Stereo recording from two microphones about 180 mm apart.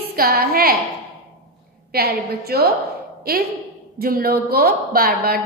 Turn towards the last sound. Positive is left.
turn(degrees=-55)  # may be behind; listen again after turning